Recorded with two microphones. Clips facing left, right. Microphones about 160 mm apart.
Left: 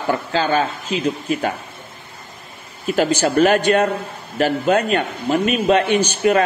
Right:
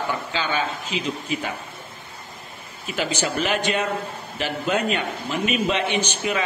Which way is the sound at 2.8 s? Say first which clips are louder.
Left 8 dB; 50° left (ahead or behind).